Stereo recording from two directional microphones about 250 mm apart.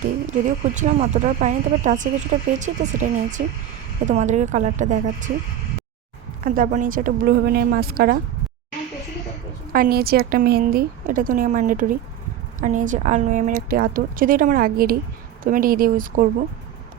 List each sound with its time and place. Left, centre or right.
0.0 s speech: right
6.4 s a woman's voice: right
9.7 s a woman's voice: right